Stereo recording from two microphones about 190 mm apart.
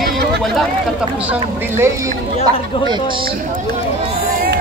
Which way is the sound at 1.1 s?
5° right (ahead or behind).